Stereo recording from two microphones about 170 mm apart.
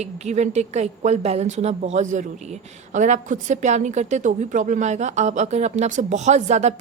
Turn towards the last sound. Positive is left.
turn(degrees=-40)  # may be behind; listen again after turning